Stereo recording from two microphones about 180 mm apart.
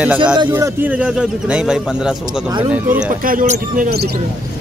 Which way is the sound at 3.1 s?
50° right (ahead or behind).